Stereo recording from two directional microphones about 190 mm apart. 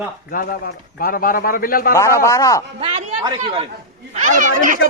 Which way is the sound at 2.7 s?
35° right (ahead or behind).